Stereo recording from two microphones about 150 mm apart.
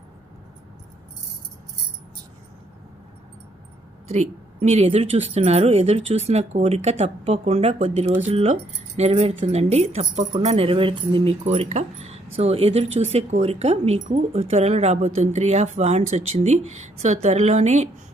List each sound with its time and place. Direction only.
4.1 s speech: 50° right (ahead or behind)